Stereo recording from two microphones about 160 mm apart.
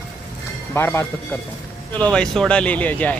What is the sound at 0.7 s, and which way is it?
Speech, 15° left (ahead or behind).